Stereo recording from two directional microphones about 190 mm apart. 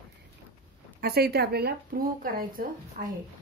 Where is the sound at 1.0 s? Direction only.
55° right (ahead or behind).